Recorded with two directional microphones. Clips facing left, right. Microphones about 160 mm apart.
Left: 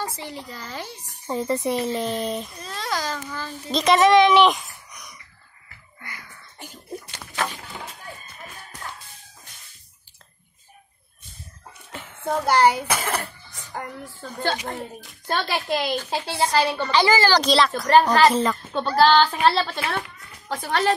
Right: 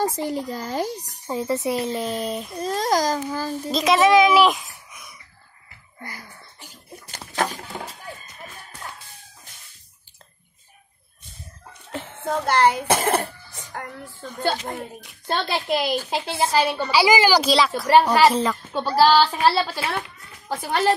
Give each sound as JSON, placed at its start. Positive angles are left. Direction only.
{"t": 0.0, "sound": "speech", "side_deg": -45}
{"t": 1.3, "sound": "speech", "side_deg": 0}
{"t": 2.6, "sound": "a child's voice", "side_deg": -40}
{"t": 3.7, "sound": "a child's voice", "side_deg": 0}
{"t": 5.9, "sound": "a sound", "side_deg": -35}
{"t": 12.3, "sound": "a woman's voice", "side_deg": 10}
{"t": 13.1, "sound": "cough", "side_deg": -30}
{"t": 13.7, "sound": "a woman's voice", "side_deg": 5}
{"t": 15.2, "sound": "a woman's voice", "side_deg": -20}